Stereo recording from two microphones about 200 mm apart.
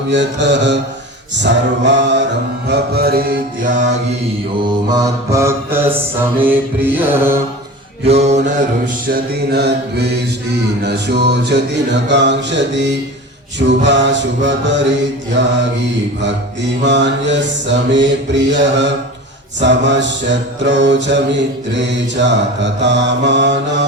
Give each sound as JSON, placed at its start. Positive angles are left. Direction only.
{"t": 0.1, "sound": "mantra", "side_deg": -60}
{"t": 4.9, "sound": "music", "side_deg": -15}
{"t": 8.0, "sound": "mantra", "side_deg": -30}
{"t": 9.0, "sound": "mantra", "side_deg": -50}
{"t": 16.8, "sound": "mantra", "side_deg": -60}